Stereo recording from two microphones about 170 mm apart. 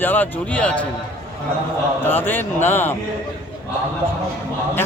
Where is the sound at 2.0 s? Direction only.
10° left (ahead or behind).